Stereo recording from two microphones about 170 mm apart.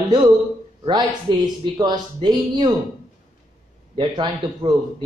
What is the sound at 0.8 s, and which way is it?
Speech, 25° right (ahead or behind).